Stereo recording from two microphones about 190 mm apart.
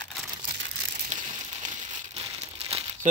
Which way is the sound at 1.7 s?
35° right (ahead or behind).